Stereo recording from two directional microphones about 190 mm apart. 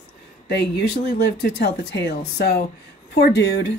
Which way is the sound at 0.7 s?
60° left (ahead or behind).